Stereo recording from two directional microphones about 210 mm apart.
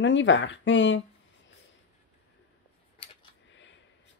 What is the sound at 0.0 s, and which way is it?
Speech, 60° left (ahead or behind).